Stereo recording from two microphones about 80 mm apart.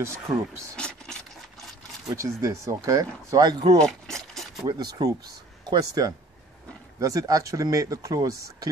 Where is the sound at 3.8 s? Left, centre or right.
Centre.